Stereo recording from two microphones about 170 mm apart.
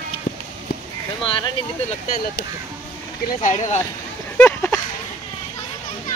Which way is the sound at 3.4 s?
40° left (ahead or behind).